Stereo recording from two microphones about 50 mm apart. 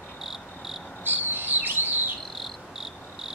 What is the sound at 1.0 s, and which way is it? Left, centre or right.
Chirp, right.